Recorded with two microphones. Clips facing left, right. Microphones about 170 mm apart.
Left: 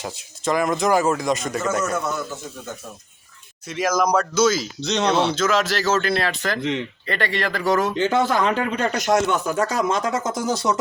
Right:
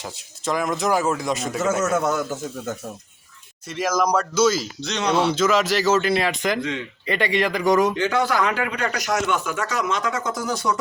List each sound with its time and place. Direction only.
0.0 s a man's voice: centre (ahead or behind)
1.8 s a man's voice: 45° right (ahead or behind)
3.7 s a man's voice: centre (ahead or behind)
4.8 s speech: 20° left (ahead or behind)
5.0 s a man's voice: 10° right (ahead or behind)
6.6 s speech: 20° left (ahead or behind)
7.1 s a man's voice: 15° right (ahead or behind)
7.9 s speech: 20° left (ahead or behind)